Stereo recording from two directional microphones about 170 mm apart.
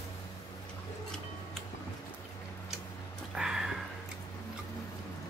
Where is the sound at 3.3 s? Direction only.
Centre (ahead or behind).